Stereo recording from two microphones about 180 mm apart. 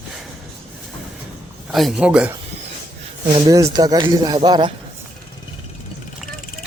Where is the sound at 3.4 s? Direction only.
20° right (ahead or behind).